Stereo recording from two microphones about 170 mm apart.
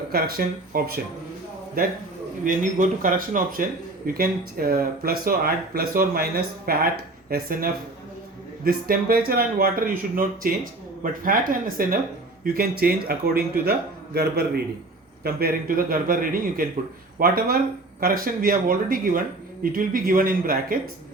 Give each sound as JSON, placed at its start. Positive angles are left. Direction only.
{"t": 0.1, "sound": "speech", "side_deg": -60}
{"t": 2.4, "sound": "speech", "side_deg": -50}